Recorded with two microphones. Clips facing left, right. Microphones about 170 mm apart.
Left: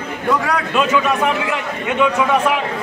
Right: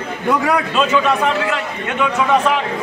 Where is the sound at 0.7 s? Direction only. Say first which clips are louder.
Left 2 dB; 15° left (ahead or behind).